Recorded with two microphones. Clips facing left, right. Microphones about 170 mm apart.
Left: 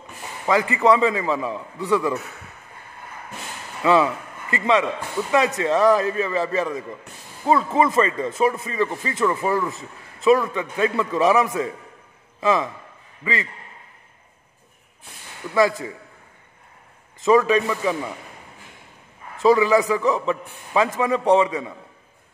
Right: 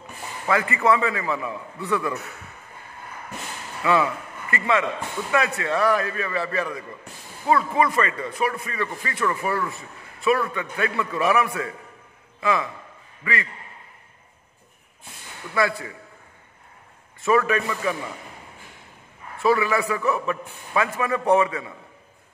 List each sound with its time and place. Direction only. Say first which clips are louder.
0.5 s a man's voice: left 3 dB; 15° left (ahead or behind)
3.8 s a man's voice: left 4 dB; 25° left (ahead or behind)
15.5 s a man's voice: left 5 dB; 15° left (ahead or behind)
17.2 s a man's voice: left 4 dB; 20° left (ahead or behind)
19.4 s a man's voice: left 5 dB; 20° left (ahead or behind)